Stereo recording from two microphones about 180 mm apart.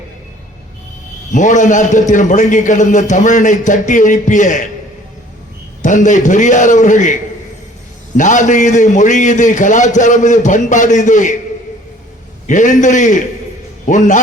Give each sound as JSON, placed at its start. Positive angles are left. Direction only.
{"t": 1.3, "sound": "a man's voice", "side_deg": 45}
{"t": 5.8, "sound": "a man's voice", "side_deg": 45}
{"t": 12.5, "sound": "a man's voice", "side_deg": 45}